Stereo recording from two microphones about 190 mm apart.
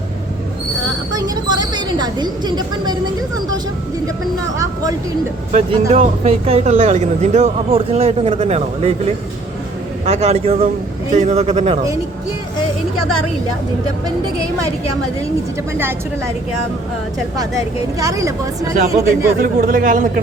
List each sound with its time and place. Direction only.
1.1 s speech: 20° right (ahead or behind)
4.5 s a sound: 15° right (ahead or behind)
5.9 s speech: 40° right (ahead or behind)
10.1 s speech: 35° right (ahead or behind)
15.8 s speech: 10° right (ahead or behind)
17.3 s speech: 20° right (ahead or behind)
19.4 s speech: 50° right (ahead or behind)